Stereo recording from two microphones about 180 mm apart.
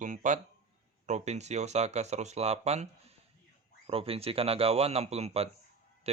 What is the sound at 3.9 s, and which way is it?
Speech, 30° right (ahead or behind).